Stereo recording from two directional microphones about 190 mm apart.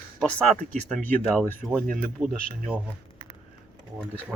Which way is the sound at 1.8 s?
45° right (ahead or behind).